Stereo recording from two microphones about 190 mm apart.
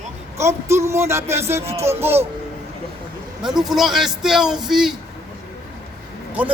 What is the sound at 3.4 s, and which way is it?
A man's voice, 5° right (ahead or behind).